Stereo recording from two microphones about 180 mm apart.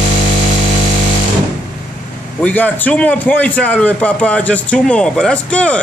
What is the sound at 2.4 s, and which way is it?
A man's voice, 10° left (ahead or behind).